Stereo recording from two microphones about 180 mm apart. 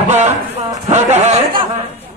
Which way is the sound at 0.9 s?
40° right (ahead or behind).